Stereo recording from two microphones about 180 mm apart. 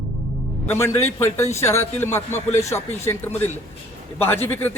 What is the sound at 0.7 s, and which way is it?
A man's voice, 15° left (ahead or behind).